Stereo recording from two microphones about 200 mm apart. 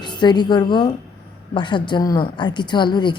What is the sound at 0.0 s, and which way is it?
A woman's voice, 20° left (ahead or behind).